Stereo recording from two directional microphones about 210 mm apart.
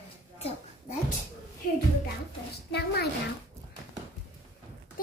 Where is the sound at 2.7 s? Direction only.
50° left (ahead or behind).